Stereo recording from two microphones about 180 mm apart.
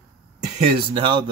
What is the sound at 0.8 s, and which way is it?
Speech, 30° right (ahead or behind).